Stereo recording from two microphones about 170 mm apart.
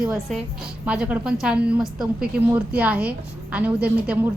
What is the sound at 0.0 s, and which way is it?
A woman's voice, 5° right (ahead or behind).